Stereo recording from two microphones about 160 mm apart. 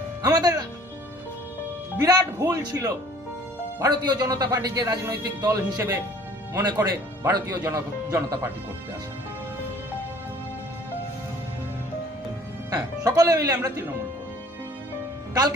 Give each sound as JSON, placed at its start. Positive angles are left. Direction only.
{"t": 0.2, "sound": "music", "side_deg": -25}
{"t": 2.0, "sound": "a man's voice", "side_deg": -20}
{"t": 12.7, "sound": "speech", "side_deg": -25}